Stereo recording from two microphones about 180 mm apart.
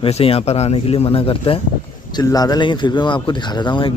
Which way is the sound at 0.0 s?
30° left (ahead or behind).